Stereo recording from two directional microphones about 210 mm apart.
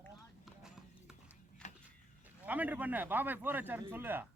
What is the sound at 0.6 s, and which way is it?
Clip-clop, 5° right (ahead or behind).